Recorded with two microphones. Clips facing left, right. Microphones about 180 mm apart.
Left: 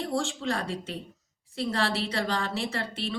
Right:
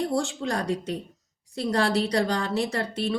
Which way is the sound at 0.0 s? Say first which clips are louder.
Right 3 dB; 40° right (ahead or behind).